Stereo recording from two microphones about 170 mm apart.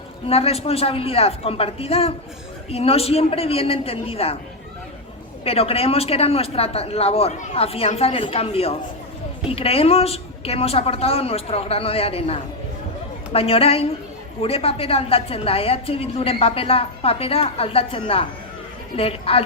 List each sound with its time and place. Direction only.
0.3 s a woman's voice: 35° left (ahead or behind)
5.5 s a woman's voice: 35° left (ahead or behind)